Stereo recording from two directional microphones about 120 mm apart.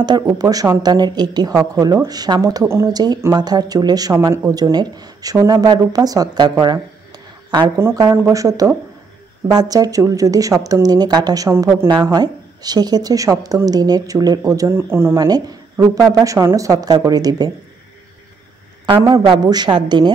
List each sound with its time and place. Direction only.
0.0 s speech: 35° right (ahead or behind)
2.9 s speech: 35° right (ahead or behind)
7.5 s speech: 35° right (ahead or behind)
7.8 s a woman's voice: 25° right (ahead or behind)
15.1 s a woman's voice: 35° right (ahead or behind)
19.2 s speech: 40° right (ahead or behind)